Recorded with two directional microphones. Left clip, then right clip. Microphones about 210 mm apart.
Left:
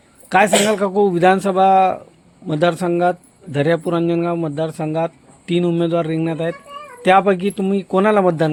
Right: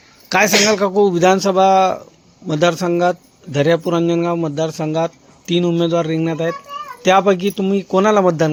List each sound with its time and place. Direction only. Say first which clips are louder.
0.3 s speech: right 1 dB; 5° right (ahead or behind)